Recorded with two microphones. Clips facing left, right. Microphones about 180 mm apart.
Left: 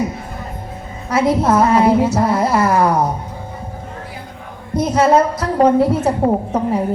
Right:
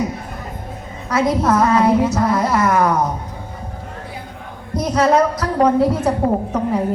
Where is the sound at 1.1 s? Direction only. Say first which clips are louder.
Left 2 dB; 30° left (ahead or behind).